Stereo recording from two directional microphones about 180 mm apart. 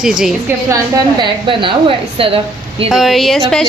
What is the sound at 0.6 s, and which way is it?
A woman's voice, 20° right (ahead or behind).